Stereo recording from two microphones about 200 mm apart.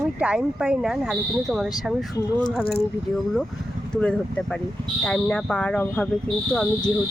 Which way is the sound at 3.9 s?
5° left (ahead or behind).